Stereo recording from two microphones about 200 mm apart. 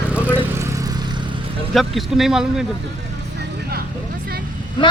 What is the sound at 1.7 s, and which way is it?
Speech, centre (ahead or behind).